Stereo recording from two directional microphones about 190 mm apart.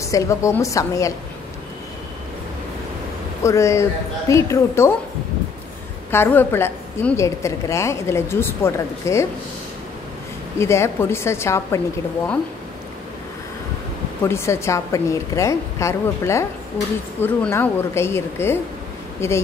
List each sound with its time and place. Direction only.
0.0 s a woman's voice: 15° left (ahead or behind)
3.4 s a woman's voice: 15° left (ahead or behind)
6.1 s a woman's voice: 10° left (ahead or behind)
10.6 s a woman's voice: 15° left (ahead or behind)
14.2 s a woman's voice: 15° left (ahead or behind)